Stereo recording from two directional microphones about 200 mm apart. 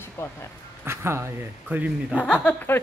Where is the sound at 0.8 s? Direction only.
10° right (ahead or behind).